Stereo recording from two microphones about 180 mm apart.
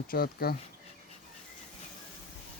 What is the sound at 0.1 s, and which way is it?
Speech, 55° left (ahead or behind).